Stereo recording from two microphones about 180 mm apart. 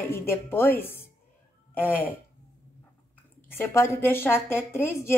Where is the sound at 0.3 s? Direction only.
10° left (ahead or behind).